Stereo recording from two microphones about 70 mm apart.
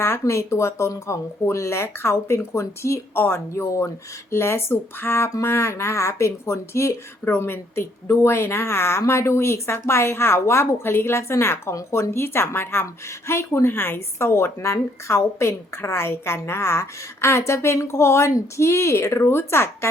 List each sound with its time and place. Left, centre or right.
0.0 s a woman's voice: left